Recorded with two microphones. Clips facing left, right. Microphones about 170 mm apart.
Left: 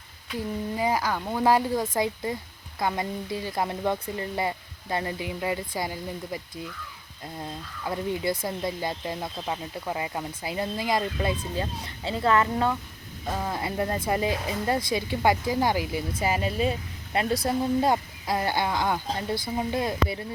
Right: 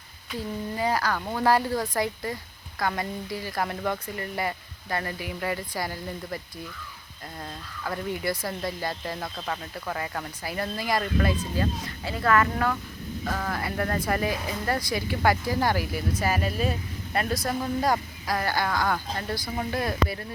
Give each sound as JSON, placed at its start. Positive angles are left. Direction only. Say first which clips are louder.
{"t": 0.8, "sound": "speech", "louder": "even", "side_deg": 20}
{"t": 7.3, "sound": "speech", "louder": "left 2 dB", "side_deg": 15}
{"t": 8.1, "sound": "speech", "louder": "left 2 dB", "side_deg": 25}